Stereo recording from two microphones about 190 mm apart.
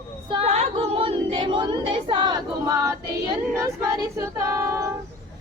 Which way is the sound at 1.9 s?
25° right (ahead or behind).